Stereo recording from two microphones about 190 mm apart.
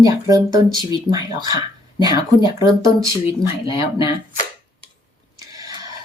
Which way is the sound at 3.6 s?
25° left (ahead or behind).